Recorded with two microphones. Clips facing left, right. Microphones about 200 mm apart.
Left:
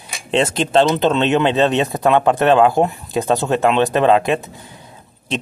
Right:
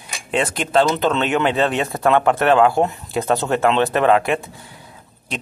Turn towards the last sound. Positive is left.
turn(degrees=20)  # may be behind; listen again after turning